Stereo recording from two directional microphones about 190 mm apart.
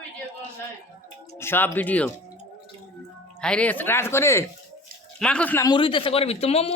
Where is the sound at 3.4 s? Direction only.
5° left (ahead or behind).